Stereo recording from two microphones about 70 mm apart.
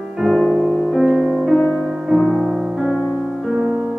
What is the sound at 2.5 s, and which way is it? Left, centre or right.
Music, centre.